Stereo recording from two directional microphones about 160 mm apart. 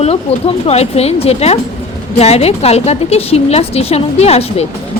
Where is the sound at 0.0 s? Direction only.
40° left (ahead or behind).